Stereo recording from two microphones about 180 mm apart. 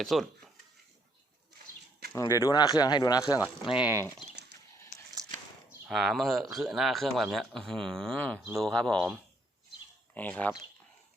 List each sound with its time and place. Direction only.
0.0 s speech: centre (ahead or behind)
2.4 s speech: 20° left (ahead or behind)
3.8 s speech: 10° right (ahead or behind)
5.9 s speech: centre (ahead or behind)
10.2 s speech: 10° left (ahead or behind)